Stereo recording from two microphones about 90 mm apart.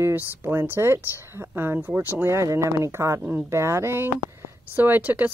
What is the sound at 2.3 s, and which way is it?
Speech, 35° right (ahead or behind).